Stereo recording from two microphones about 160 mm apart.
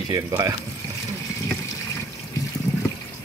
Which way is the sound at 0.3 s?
15° right (ahead or behind).